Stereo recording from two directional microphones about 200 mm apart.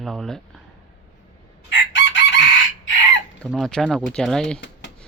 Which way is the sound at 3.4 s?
Centre (ahead or behind).